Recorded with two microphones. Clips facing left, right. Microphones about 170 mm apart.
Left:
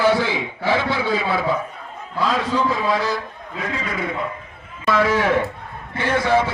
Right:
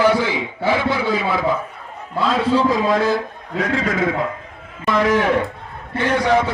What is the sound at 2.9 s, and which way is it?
Speech, 50° right (ahead or behind).